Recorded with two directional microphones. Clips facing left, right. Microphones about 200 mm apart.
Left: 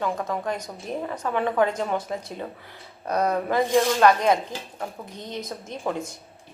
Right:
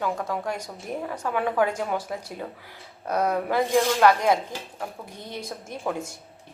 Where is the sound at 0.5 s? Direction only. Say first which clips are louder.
Left 2 dB; 20° left (ahead or behind).